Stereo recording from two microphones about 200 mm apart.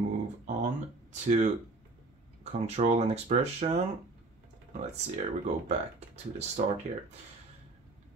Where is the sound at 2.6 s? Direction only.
35° right (ahead or behind).